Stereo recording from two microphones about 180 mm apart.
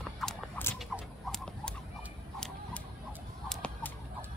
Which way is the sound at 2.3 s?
5° left (ahead or behind).